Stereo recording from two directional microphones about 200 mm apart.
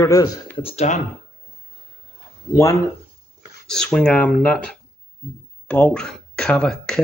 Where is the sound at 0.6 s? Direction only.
30° left (ahead or behind).